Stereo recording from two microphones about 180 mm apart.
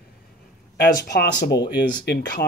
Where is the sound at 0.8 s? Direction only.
65° left (ahead or behind).